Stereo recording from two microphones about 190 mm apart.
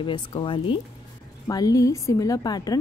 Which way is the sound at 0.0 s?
25° left (ahead or behind).